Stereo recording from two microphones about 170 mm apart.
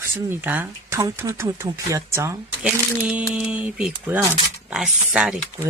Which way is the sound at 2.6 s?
5° right (ahead or behind).